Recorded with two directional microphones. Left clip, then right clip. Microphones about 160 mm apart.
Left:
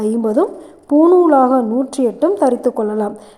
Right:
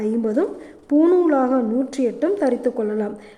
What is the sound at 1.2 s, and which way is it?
Speech, 25° right (ahead or behind).